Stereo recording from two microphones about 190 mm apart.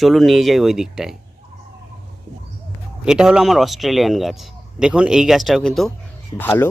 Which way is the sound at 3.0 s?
5° right (ahead or behind).